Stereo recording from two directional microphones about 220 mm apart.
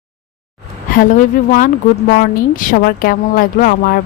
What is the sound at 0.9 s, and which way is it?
A woman's voice, 40° left (ahead or behind).